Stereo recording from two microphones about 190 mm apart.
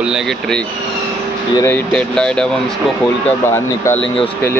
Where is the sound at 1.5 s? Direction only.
10° left (ahead or behind).